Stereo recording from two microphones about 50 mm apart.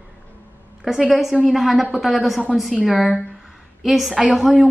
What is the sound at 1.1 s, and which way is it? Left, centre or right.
A woman's voice, centre.